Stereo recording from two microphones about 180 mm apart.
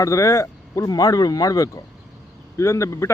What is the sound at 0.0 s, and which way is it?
Speech, 15° left (ahead or behind).